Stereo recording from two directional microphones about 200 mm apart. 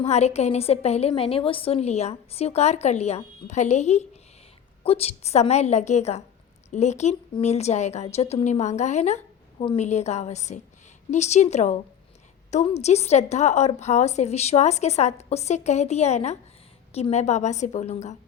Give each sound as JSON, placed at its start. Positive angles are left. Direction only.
{"t": 0.0, "sound": "a woman's voice", "side_deg": 35}